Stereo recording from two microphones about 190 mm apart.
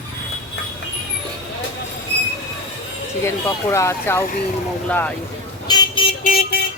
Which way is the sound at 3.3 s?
15° left (ahead or behind).